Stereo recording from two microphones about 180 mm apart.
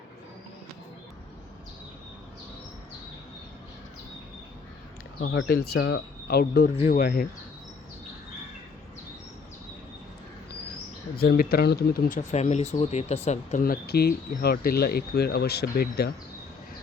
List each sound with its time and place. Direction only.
5.2 s speech: 65° left (ahead or behind)
11.2 s speech: 60° left (ahead or behind); by 13.7 s 40° left (ahead or behind)
13.7 s speech: 60° left (ahead or behind)